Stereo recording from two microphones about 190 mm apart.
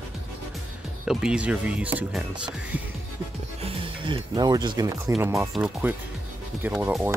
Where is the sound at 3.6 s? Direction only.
30° right (ahead or behind); by 7.0 s 5° right (ahead or behind).